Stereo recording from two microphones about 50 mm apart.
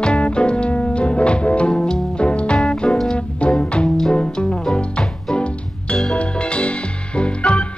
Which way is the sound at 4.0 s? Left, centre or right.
Centre.